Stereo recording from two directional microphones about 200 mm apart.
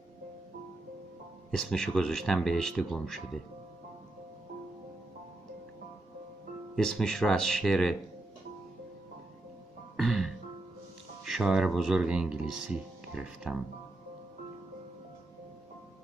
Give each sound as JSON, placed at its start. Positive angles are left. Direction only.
{"t": 1.5, "sound": "speech", "side_deg": 5}
{"t": 6.7, "sound": "speech", "side_deg": 0}
{"t": 9.9, "sound": "music", "side_deg": 0}
{"t": 11.2, "sound": "speech", "side_deg": 0}